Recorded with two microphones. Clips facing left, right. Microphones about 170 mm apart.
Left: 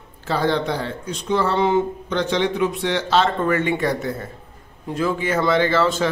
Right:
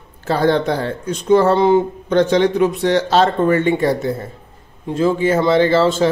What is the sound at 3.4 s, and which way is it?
A man's voice, 30° right (ahead or behind).